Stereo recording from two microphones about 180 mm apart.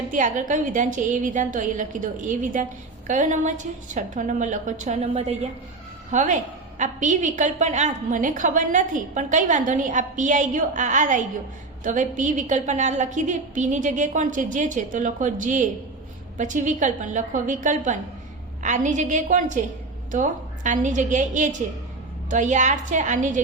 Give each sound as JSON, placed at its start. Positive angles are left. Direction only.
{"t": 0.1, "sound": "a woman's voice", "side_deg": -45}